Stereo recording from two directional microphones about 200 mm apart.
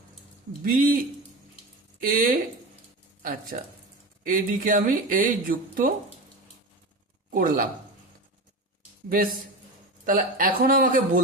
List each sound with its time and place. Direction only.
0.6 s speech: 45° right (ahead or behind)
2.0 s speech: 45° right (ahead or behind)
7.3 s a man's voice: 45° right (ahead or behind)
9.0 s speech: 45° right (ahead or behind)